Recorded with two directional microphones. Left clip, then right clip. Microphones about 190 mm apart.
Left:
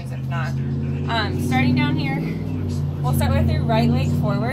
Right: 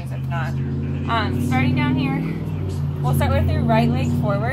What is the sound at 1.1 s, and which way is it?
Speech, 10° left (ahead or behind).